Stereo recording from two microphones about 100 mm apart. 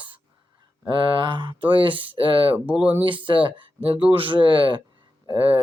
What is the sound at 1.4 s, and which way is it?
Speech, 55° right (ahead or behind).